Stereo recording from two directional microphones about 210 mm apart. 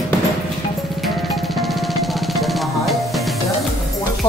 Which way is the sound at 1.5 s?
Centre (ahead or behind).